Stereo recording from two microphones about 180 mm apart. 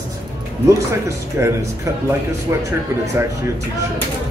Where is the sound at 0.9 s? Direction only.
15° right (ahead or behind).